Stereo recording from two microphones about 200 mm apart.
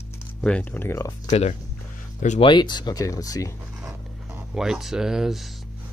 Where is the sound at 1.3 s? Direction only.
35° left (ahead or behind).